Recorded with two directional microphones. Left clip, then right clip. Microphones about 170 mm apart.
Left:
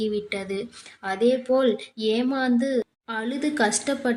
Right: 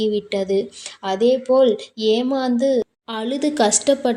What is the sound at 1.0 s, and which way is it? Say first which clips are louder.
Speech: right 5 dB; 15° right (ahead or behind).